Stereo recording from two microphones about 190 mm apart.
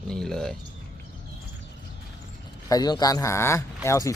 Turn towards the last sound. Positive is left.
turn(degrees=15)  # may be behind; listen again after turning